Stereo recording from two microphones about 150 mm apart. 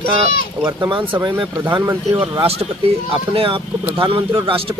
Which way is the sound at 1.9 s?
15° right (ahead or behind).